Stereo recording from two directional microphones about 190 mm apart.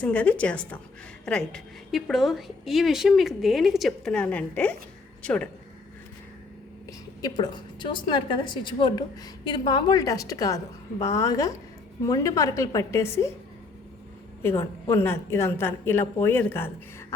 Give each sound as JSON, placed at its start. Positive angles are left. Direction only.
{"t": 0.0, "sound": "a woman's voice", "side_deg": 5}
{"t": 7.2, "sound": "a woman's voice", "side_deg": 20}
{"t": 14.4, "sound": "a woman's voice", "side_deg": 15}